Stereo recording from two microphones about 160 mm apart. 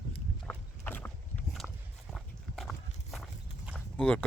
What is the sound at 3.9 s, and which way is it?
Speech, 5° left (ahead or behind).